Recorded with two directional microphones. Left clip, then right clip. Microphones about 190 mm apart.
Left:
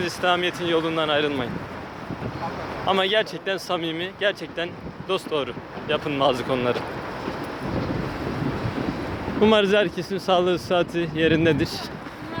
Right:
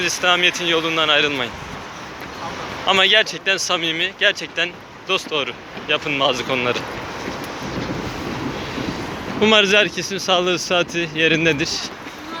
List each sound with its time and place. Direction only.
0.0 s speech: 15° left (ahead or behind)
2.8 s speech: 15° left (ahead or behind)
9.4 s speech: 15° left (ahead or behind)